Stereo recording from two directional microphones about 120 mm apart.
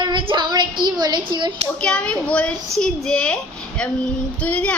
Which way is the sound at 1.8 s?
10° left (ahead or behind).